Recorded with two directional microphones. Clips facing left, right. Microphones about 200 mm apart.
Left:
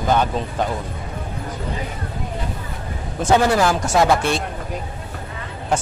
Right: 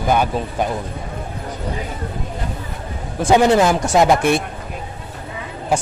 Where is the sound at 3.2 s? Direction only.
15° right (ahead or behind).